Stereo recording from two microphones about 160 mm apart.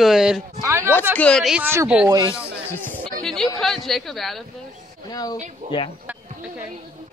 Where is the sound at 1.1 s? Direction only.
5° left (ahead or behind).